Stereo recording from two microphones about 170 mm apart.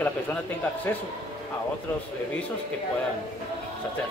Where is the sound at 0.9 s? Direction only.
10° left (ahead or behind).